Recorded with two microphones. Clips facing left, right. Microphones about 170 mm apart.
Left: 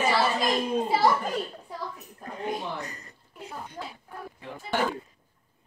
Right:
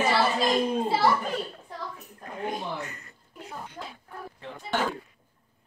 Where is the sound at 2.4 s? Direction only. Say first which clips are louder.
Even; 35° left (ahead or behind).